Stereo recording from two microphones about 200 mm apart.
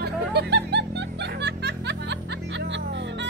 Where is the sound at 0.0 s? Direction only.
55° right (ahead or behind).